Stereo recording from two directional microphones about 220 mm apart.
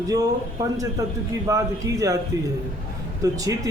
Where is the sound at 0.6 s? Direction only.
15° right (ahead or behind).